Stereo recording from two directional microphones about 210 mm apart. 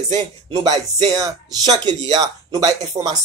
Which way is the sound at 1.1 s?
20° right (ahead or behind).